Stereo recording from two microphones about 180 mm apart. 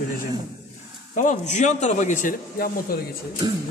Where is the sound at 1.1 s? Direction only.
40° left (ahead or behind).